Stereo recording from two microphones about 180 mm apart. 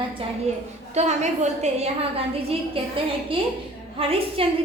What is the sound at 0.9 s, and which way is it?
A woman's voice, 40° right (ahead or behind).